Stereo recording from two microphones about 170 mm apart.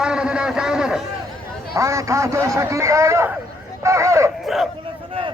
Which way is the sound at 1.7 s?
15° right (ahead or behind).